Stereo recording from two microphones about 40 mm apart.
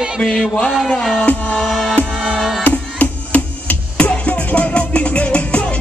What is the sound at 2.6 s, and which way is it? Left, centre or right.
Music, left.